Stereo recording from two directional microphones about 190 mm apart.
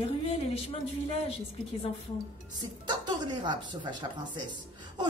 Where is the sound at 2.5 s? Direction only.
20° right (ahead or behind).